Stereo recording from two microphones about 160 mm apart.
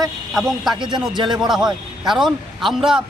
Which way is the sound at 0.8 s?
30° right (ahead or behind).